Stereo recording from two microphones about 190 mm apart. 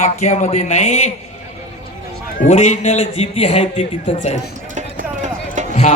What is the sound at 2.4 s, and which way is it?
Speech, 35° left (ahead or behind).